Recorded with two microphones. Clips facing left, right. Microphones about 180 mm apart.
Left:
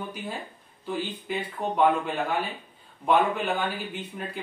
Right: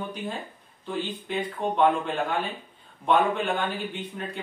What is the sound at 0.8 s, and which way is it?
A man's voice, 5° left (ahead or behind).